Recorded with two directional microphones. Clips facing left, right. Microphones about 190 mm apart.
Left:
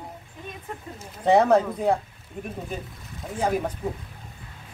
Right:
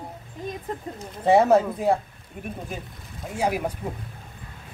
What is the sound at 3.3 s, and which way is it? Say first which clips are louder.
Speech: even; 10° right (ahead or behind).